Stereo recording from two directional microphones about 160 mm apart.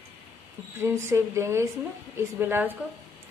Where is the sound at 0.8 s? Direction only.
15° right (ahead or behind).